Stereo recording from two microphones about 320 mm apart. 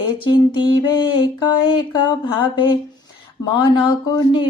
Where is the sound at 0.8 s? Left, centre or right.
Centre.